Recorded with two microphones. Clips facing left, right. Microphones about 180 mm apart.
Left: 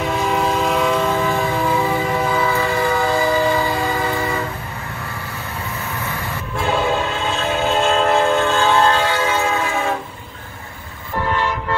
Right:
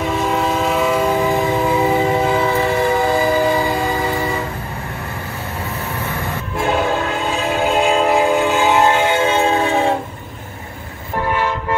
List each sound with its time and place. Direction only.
0.1 s train: centre (ahead or behind); by 3.7 s 15° right (ahead or behind)
7.6 s train: 10° right (ahead or behind); by 9.9 s 30° right (ahead or behind)